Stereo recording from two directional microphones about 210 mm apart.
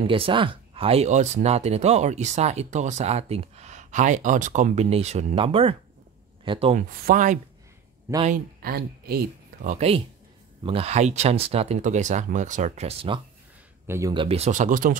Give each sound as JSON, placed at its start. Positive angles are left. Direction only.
{"t": 0.0, "sound": "speech", "side_deg": -25}
{"t": 6.9, "sound": "speech", "side_deg": -45}
{"t": 13.8, "sound": "speech", "side_deg": -15}
{"t": 14.1, "sound": "speech", "side_deg": -25}